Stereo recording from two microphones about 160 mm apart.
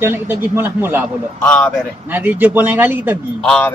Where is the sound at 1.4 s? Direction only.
5° left (ahead or behind).